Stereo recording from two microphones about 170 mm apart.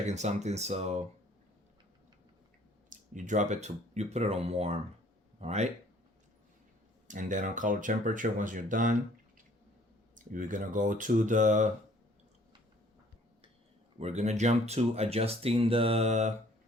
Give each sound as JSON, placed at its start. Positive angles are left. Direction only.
{"t": 0.1, "sound": "speech", "side_deg": -40}
{"t": 2.9, "sound": "speech", "side_deg": -50}
{"t": 7.1, "sound": "speech", "side_deg": -50}
{"t": 10.2, "sound": "speech", "side_deg": -50}
{"t": 14.0, "sound": "speech", "side_deg": -40}